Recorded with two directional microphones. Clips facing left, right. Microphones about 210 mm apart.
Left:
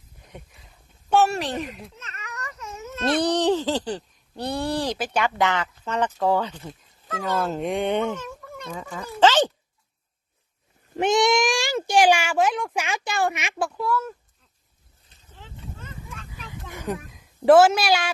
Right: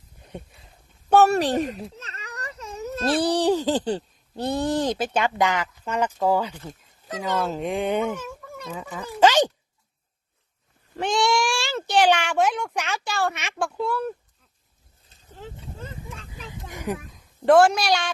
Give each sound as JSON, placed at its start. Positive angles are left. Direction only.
{"t": 1.1, "sound": "a sound", "side_deg": -40}
{"t": 3.0, "sound": "a child's voice", "side_deg": -10}
{"t": 7.3, "sound": "a child's voice", "side_deg": 0}
{"t": 10.9, "sound": "speech", "side_deg": 20}
{"t": 12.8, "sound": "speech", "side_deg": 15}
{"t": 13.5, "sound": "a woman's voice", "side_deg": 0}
{"t": 15.3, "sound": "a sound", "side_deg": -40}
{"t": 16.3, "sound": "a sound", "side_deg": -20}
{"t": 17.1, "sound": "a woman's voice", "side_deg": 5}